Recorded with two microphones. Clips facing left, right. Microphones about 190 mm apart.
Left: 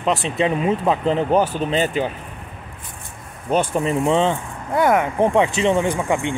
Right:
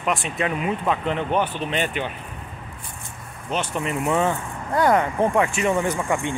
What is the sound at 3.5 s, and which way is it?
Speech, 45° left (ahead or behind).